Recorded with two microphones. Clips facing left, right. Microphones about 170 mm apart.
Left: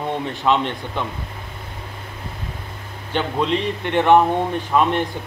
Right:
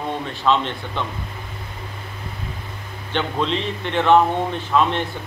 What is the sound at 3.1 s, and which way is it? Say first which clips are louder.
Speech: left 2 dB; 10° left (ahead or behind).